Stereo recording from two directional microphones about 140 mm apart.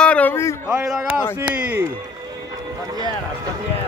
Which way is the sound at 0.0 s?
10° left (ahead or behind).